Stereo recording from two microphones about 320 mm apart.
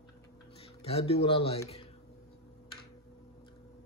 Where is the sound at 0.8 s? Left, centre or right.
Centre.